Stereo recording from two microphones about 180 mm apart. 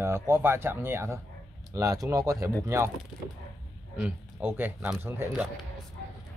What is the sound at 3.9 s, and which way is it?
Speech, 10° right (ahead or behind).